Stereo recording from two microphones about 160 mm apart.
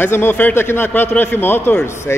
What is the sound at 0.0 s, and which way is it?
A man's voice, 15° left (ahead or behind).